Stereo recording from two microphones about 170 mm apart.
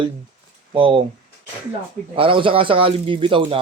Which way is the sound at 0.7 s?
30° right (ahead or behind).